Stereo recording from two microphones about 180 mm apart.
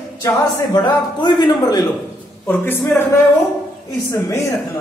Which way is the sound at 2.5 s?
10° left (ahead or behind).